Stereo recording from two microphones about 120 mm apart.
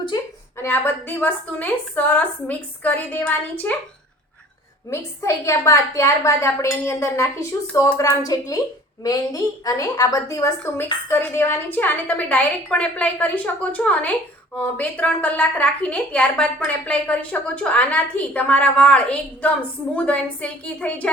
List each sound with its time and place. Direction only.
0.5 s a woman's voice: 20° left (ahead or behind)
4.9 s a woman's voice: 25° left (ahead or behind)